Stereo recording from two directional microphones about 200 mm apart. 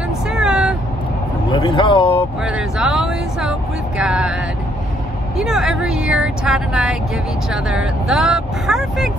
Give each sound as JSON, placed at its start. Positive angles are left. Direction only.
{"t": 0.3, "sound": "vehicle", "side_deg": -5}
{"t": 1.5, "sound": "vehicle", "side_deg": 25}
{"t": 2.4, "sound": "a sound", "side_deg": -5}
{"t": 4.0, "sound": "vehicle", "side_deg": -5}
{"t": 5.4, "sound": "speech", "side_deg": -5}